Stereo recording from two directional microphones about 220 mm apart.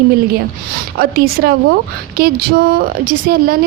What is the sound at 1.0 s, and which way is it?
Speech, 45° right (ahead or behind).